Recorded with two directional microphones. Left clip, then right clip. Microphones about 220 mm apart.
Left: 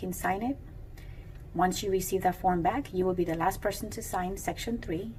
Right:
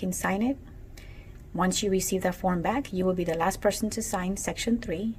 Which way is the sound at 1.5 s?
50° right (ahead or behind).